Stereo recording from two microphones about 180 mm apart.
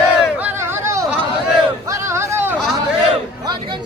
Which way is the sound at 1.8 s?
15° right (ahead or behind).